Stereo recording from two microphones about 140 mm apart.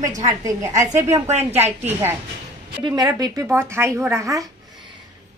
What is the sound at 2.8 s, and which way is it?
Speech, 30° right (ahead or behind).